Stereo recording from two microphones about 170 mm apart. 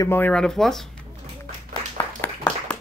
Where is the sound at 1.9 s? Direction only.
20° left (ahead or behind).